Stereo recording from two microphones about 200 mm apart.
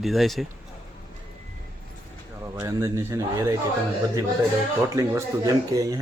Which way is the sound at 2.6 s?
15° right (ahead or behind).